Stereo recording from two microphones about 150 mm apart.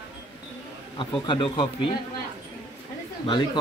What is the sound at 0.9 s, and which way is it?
Speech, 35° left (ahead or behind).